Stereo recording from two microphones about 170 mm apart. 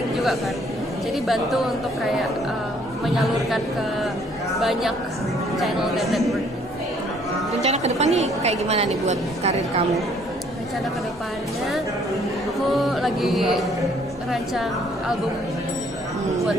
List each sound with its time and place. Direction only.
1.2 s music: centre (ahead or behind)
3.2 s music: centre (ahead or behind)
7.6 s a woman's voice: 40° right (ahead or behind)
12.7 s music: centre (ahead or behind)